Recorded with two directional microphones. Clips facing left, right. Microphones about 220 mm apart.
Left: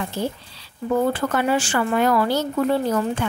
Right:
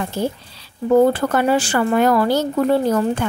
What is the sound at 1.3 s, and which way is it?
A woman's voice, 40° right (ahead or behind).